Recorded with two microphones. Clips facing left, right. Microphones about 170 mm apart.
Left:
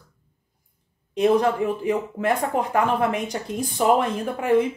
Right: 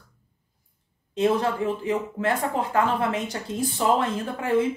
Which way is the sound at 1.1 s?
15° left (ahead or behind).